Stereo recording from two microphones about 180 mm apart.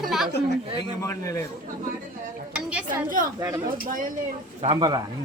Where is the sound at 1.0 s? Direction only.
15° left (ahead or behind).